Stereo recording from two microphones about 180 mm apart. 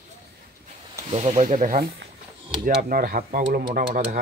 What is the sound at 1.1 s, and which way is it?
Speech, 40° right (ahead or behind).